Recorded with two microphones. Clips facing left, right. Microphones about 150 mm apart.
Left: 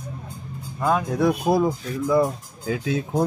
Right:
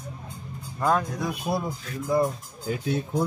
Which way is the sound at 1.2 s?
80° left.